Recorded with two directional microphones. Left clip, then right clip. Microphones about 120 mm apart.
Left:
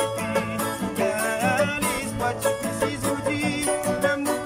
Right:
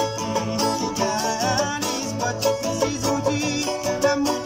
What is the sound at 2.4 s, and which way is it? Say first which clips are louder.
Music: right 6 dB; 15° right (ahead or behind).